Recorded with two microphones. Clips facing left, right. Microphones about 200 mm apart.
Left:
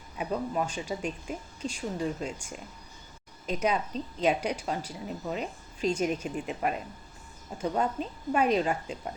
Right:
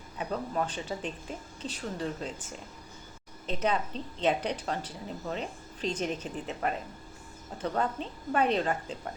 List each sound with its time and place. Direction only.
0.2 s a woman's voice: 10° left (ahead or behind)